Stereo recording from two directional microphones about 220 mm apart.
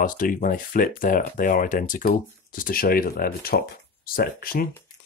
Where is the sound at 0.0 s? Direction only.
40° left (ahead or behind).